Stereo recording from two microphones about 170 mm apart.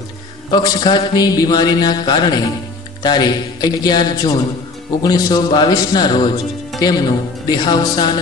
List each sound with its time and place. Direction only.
0.5 s a man's voice: 25° left (ahead or behind)